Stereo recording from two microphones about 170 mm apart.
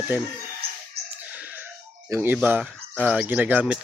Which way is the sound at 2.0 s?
15° right (ahead or behind).